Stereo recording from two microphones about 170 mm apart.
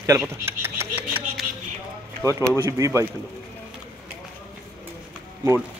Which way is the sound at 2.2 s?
15° right (ahead or behind).